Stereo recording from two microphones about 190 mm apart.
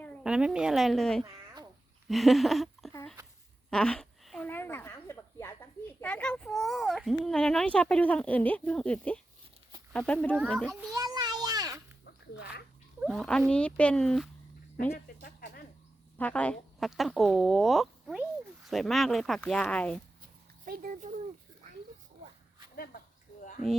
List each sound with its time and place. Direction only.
0.2 s speech: 5° right (ahead or behind)
2.0 s a sound: centre (ahead or behind)
6.0 s speech: 10° left (ahead or behind)
10.9 s a sound: 20° right (ahead or behind)
13.0 s speech: centre (ahead or behind)
14.9 s a sound: 50° left (ahead or behind)
16.1 s speech: 10° left (ahead or behind)
20.7 s speech: 45° right (ahead or behind)
22.7 s speech: 50° left (ahead or behind)